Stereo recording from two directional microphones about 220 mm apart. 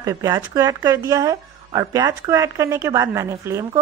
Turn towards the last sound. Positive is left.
turn(degrees=-15)  # may be behind; listen again after turning